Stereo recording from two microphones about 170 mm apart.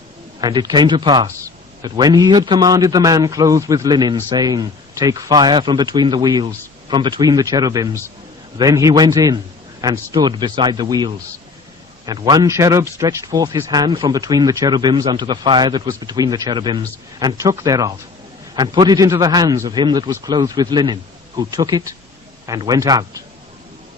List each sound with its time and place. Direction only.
0.4 s a man's voice: 25° right (ahead or behind)